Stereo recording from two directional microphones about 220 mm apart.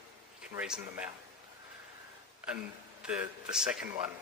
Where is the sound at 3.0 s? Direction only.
5° right (ahead or behind).